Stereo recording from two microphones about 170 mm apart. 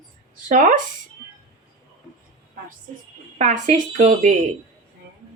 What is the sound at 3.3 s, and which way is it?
A woman's voice, 50° right (ahead or behind).